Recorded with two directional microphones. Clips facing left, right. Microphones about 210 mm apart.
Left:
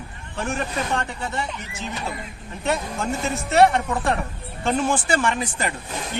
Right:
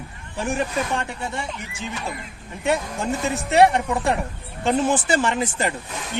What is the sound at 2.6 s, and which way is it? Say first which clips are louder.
Speech: right 2 dB; 15° right (ahead or behind).